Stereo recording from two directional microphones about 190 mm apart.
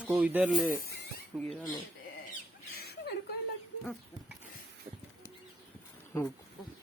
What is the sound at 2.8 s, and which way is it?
Chuckle, 55° left (ahead or behind).